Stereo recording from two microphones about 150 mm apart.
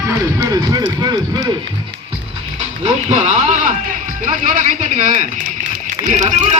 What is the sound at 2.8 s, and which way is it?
Speech, 50° right (ahead or behind).